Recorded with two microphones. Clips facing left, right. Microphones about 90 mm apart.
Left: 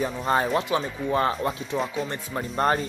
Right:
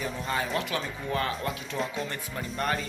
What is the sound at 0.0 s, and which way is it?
Speech, 40° left (ahead or behind).